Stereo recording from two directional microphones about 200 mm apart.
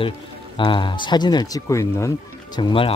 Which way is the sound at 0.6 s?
25° left (ahead or behind).